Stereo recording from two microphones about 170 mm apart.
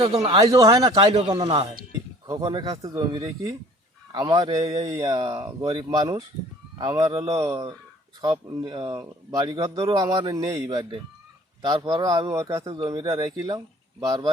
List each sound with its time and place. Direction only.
0.3 s speech: 20° right (ahead or behind)